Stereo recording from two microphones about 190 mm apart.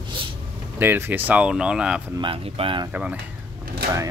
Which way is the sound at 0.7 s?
10° right (ahead or behind).